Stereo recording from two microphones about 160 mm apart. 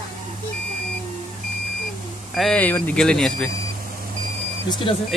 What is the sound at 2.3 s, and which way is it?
Speech, centre (ahead or behind).